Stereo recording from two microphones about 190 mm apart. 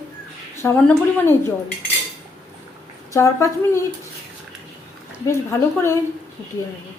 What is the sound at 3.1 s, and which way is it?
Speech, 15° left (ahead or behind).